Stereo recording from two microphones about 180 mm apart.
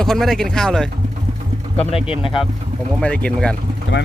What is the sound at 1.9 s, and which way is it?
Speech, 30° left (ahead or behind).